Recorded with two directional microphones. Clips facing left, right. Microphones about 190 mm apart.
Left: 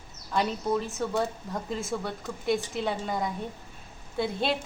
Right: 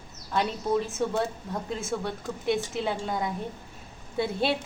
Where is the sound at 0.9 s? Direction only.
Centre (ahead or behind).